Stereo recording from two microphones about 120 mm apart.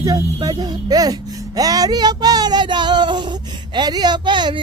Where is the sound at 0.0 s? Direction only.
35° right (ahead or behind).